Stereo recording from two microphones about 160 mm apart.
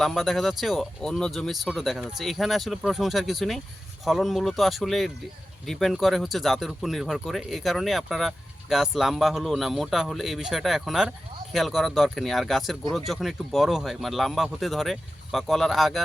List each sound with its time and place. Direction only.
0.0 s speech: centre (ahead or behind)